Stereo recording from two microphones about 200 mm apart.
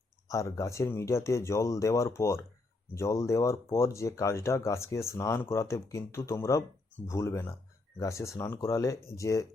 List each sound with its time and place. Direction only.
0.3 s speech: 15° left (ahead or behind)